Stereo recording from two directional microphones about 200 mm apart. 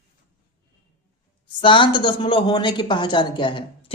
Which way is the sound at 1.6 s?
25° left (ahead or behind).